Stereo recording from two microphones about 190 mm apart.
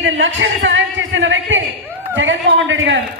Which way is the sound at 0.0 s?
80° right.